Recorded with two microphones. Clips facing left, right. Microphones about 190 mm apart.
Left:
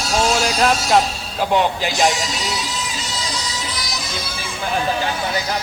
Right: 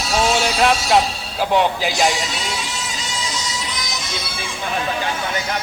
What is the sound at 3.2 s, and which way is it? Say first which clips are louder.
Music: right 1 dB; 35° left (ahead or behind).